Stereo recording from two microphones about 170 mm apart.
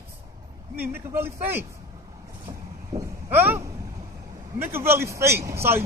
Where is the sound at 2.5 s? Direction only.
15° right (ahead or behind).